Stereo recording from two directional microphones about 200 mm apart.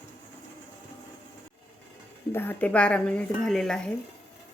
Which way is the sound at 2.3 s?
10° left (ahead or behind).